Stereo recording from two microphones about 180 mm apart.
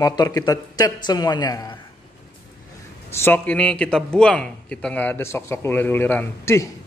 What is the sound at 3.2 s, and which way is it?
A man's voice, 10° left (ahead or behind).